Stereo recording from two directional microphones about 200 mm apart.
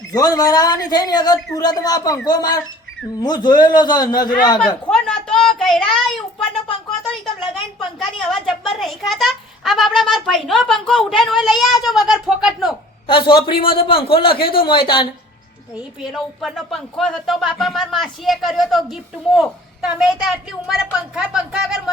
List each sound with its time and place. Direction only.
0.1 s a man's voice: 20° left (ahead or behind)
4.6 s a sound: 5° left (ahead or behind)
7.8 s a child's voice: centre (ahead or behind)
13.1 s a man's voice: 25° left (ahead or behind)
16.0 s a child's voice: centre (ahead or behind)